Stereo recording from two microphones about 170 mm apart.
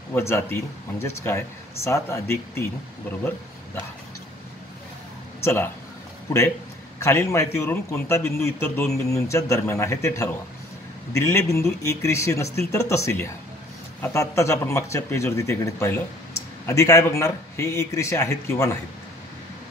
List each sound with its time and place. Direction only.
0.1 s a man's voice: 15° left (ahead or behind)
5.4 s a man's voice: 15° left (ahead or behind)
7.0 s a man's voice: 15° left (ahead or behind)